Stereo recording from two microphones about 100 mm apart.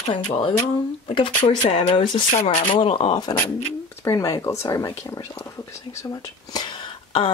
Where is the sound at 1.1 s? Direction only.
75° left (ahead or behind); by 3.3 s 55° left (ahead or behind).